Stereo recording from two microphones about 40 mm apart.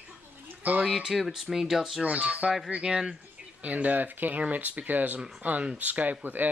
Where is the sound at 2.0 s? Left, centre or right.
Right.